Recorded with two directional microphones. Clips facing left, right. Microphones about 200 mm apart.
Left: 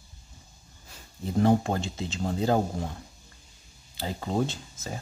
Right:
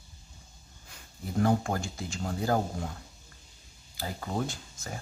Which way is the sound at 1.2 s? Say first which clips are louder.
Left 4 dB; 25° left (ahead or behind).